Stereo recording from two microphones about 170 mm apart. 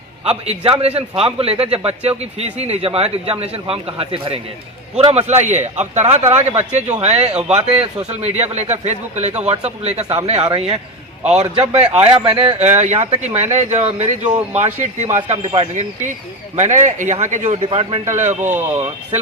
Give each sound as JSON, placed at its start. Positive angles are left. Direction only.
{"t": 0.3, "sound": "a man's voice", "side_deg": -35}
{"t": 6.5, "sound": "speech", "side_deg": -10}
{"t": 7.0, "sound": "a man's voice", "side_deg": -40}
{"t": 18.1, "sound": "a man's voice", "side_deg": -40}
{"t": 18.5, "sound": "speech", "side_deg": -10}